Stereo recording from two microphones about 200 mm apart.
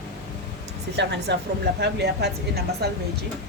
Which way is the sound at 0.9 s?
60° right (ahead or behind).